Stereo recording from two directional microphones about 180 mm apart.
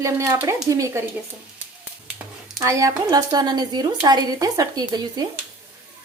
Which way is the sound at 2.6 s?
15° right (ahead or behind).